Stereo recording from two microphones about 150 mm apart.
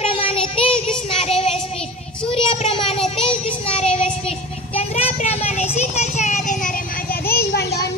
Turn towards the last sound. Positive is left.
turn(degrees=90)